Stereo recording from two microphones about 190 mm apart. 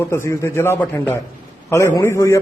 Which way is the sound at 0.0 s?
15° left (ahead or behind).